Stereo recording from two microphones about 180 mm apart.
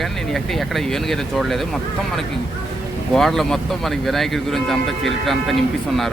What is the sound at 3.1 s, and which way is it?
Speech, centre (ahead or behind).